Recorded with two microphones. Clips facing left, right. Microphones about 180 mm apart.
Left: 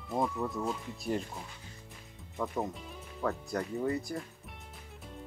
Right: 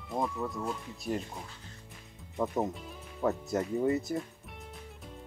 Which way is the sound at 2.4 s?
20° right (ahead or behind).